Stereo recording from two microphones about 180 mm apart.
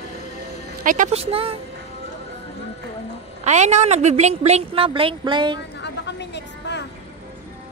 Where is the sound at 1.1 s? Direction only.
35° right (ahead or behind).